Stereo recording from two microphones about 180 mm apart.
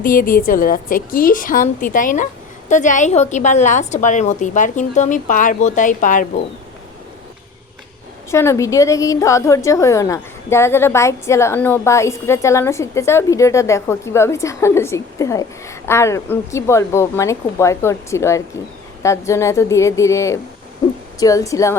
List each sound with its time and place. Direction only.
0.0 s a woman's voice: 50° left (ahead or behind)
8.3 s a woman's voice: 15° left (ahead or behind)